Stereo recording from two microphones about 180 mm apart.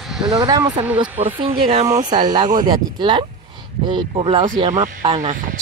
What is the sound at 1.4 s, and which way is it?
Speech, 30° right (ahead or behind).